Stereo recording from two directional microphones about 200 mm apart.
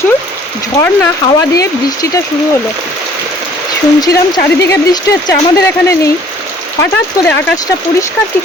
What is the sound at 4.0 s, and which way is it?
Speech, 20° left (ahead or behind).